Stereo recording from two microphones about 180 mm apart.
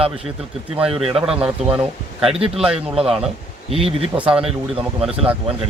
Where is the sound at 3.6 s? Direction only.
30° right (ahead or behind).